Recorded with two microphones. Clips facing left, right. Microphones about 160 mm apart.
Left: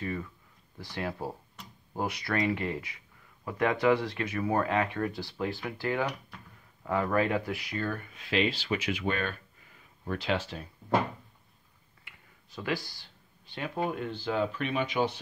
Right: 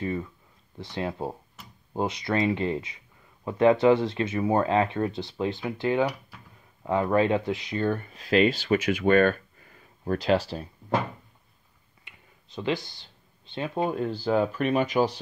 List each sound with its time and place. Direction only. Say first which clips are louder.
0.0 s speech: right 5 dB; 25° right (ahead or behind)
1.6 s tick-tock: even; 5° right (ahead or behind)
2.0 s speech: right 4 dB; 20° right (ahead or behind)
12.0 s speech: right 2 dB; 20° right (ahead or behind); by 15.1 s 40° right (ahead or behind)